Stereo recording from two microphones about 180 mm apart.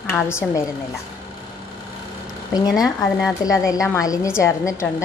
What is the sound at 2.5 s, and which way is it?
A woman's voice, 20° left (ahead or behind).